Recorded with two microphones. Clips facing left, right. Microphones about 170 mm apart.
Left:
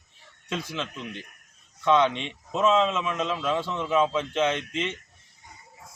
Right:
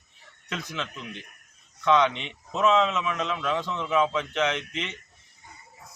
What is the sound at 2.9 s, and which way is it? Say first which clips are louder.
Speech: left 1 dB; 25° left (ahead or behind).